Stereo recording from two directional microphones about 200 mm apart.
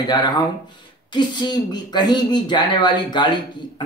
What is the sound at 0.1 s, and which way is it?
Speech, 20° left (ahead or behind).